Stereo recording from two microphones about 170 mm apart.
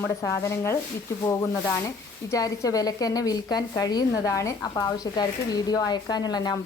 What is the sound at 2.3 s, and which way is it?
A woman's voice, 20° left (ahead or behind).